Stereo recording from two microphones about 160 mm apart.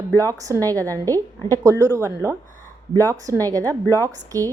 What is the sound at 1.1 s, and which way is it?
A woman's voice, 20° right (ahead or behind).